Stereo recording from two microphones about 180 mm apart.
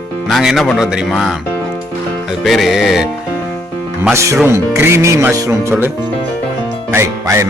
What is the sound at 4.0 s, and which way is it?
Speech, 15° right (ahead or behind).